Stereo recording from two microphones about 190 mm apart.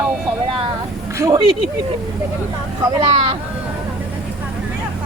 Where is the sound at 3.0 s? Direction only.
25° right (ahead or behind).